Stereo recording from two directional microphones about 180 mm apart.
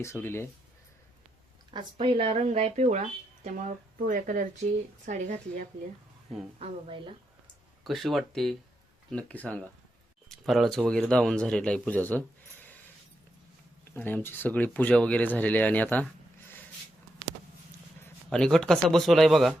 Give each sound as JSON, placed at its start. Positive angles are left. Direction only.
{"t": 0.0, "sound": "speech", "side_deg": 15}
{"t": 2.0, "sound": "speech", "side_deg": -30}
{"t": 7.9, "sound": "speech", "side_deg": 0}
{"t": 13.9, "sound": "speech", "side_deg": 10}
{"t": 18.0, "sound": "speech", "side_deg": 5}